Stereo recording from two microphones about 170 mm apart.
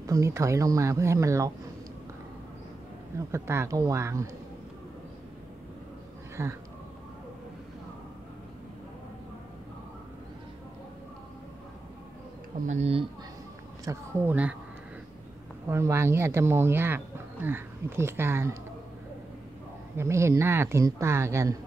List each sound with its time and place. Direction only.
0.0 s speech: 20° right (ahead or behind)
3.3 s speech: 15° right (ahead or behind)
6.4 s speech: 15° right (ahead or behind)
12.6 s speech: 40° right (ahead or behind)
13.8 s speech: 10° right (ahead or behind)
15.7 s speech: 15° right (ahead or behind)
20.0 s speech: 15° right (ahead or behind)